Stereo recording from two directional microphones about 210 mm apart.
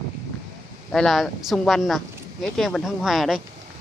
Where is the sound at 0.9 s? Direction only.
Centre (ahead or behind).